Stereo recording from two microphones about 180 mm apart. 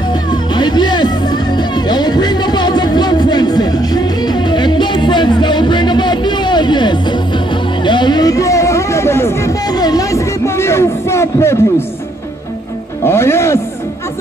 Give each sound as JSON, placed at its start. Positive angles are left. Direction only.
{"t": 0.3, "sound": "music", "side_deg": 25}
{"t": 7.8, "sound": "a sound", "side_deg": 25}
{"t": 13.0, "sound": "music", "side_deg": 15}